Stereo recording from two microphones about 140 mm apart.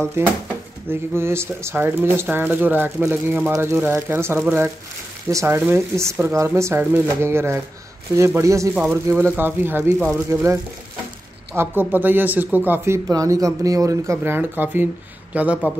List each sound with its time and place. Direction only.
0.2 s speech: 15° right (ahead or behind)